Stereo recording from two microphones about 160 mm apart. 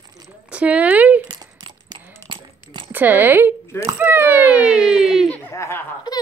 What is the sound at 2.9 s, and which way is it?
A child's voice, 10° right (ahead or behind).